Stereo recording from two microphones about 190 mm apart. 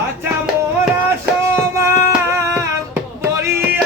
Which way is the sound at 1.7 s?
15° right (ahead or behind).